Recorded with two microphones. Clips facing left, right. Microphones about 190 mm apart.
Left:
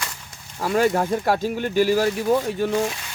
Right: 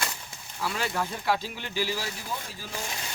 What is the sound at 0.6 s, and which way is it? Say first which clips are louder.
Speech: left 11 dB; 45° left (ahead or behind).